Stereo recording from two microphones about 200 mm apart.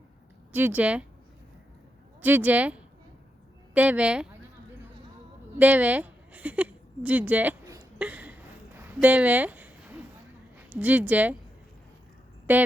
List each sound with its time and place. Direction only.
0.5 s a woman's voice: 10° right (ahead or behind)
2.2 s a woman's voice: 10° right (ahead or behind)
5.5 s a sound: 10° right (ahead or behind)
10.7 s a woman's voice: 10° right (ahead or behind)